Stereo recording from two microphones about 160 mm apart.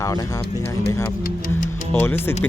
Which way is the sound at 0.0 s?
20° left (ahead or behind).